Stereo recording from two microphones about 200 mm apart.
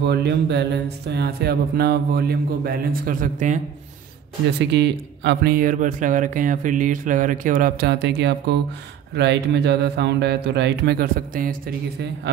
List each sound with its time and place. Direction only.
0.0 s speech: 55° right (ahead or behind); by 3.6 s 40° right (ahead or behind)
4.6 s speech: 60° right (ahead or behind)